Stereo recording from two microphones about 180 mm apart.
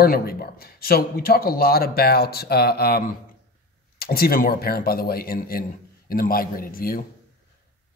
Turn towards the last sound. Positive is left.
turn(degrees=55)  # may be behind; listen again after turning